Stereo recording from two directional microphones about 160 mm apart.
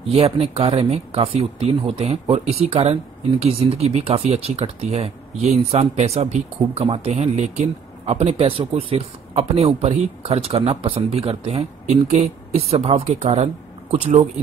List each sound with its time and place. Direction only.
0.1 s speech: 40° right (ahead or behind)